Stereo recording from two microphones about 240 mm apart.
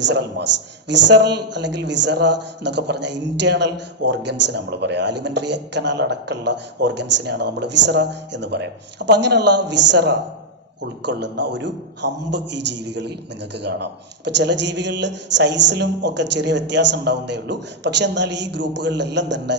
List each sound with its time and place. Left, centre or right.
0.0 s a man's voice: right